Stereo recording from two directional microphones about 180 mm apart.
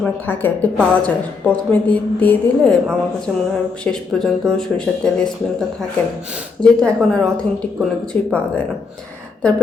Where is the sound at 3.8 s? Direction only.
5° left (ahead or behind).